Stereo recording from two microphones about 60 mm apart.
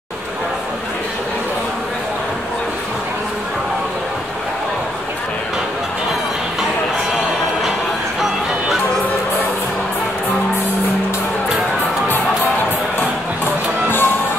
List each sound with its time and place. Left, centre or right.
13.8 s music: left